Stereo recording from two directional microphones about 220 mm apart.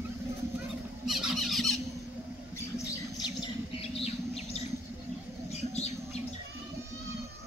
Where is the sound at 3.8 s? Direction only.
30° left (ahead or behind).